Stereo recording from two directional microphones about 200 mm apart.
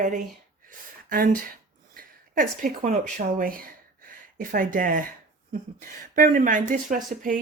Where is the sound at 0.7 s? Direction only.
45° right (ahead or behind).